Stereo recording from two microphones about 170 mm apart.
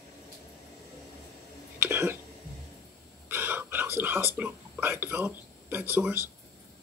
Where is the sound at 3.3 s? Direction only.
15° right (ahead or behind).